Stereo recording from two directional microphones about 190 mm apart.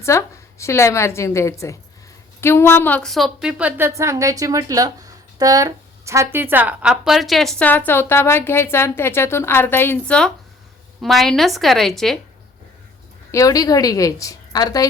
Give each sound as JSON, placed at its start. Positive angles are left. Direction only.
{"t": 0.0, "sound": "a woman's voice", "side_deg": 15}
{"t": 13.3, "sound": "a woman's voice", "side_deg": 20}